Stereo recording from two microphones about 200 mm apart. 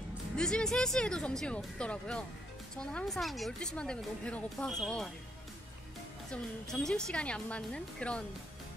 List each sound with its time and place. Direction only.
0.4 s speech: 5° left (ahead or behind)
6.3 s speech: 5° left (ahead or behind)